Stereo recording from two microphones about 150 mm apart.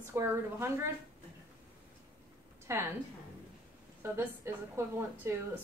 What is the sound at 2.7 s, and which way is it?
Speech, 20° right (ahead or behind).